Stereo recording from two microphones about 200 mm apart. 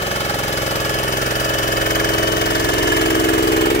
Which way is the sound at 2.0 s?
55° left (ahead or behind).